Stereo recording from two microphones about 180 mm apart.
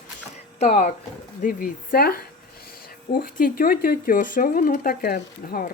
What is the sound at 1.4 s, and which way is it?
Speech, 50° left (ahead or behind).